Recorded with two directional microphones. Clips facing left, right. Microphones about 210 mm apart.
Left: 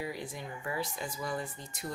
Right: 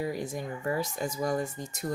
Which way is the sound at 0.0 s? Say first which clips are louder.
Right 6 dB; 45° right (ahead or behind).